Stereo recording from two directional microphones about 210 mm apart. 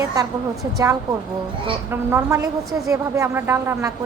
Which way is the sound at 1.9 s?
10° right (ahead or behind).